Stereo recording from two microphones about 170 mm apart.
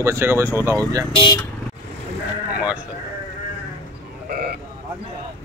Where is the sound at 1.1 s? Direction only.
25° left (ahead or behind).